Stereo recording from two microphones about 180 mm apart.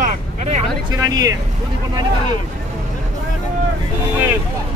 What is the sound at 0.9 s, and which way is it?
Speech, 20° right (ahead or behind).